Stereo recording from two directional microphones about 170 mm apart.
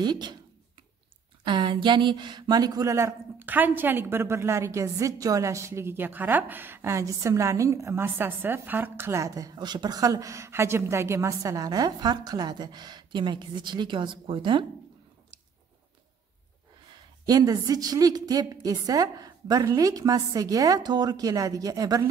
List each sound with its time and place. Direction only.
0.0 s a woman's voice: 25° right (ahead or behind)
1.4 s speech: 25° right (ahead or behind)
16.9 s a woman's voice: 20° right (ahead or behind)